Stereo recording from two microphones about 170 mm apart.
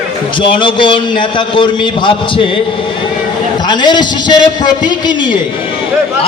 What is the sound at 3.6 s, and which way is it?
Speech, 25° left (ahead or behind).